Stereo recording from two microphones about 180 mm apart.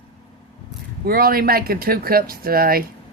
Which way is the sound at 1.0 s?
55° right (ahead or behind).